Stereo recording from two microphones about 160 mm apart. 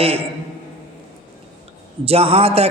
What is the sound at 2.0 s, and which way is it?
Speech, 40° right (ahead or behind).